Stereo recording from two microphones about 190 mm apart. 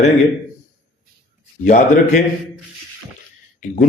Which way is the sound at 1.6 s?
40° left (ahead or behind).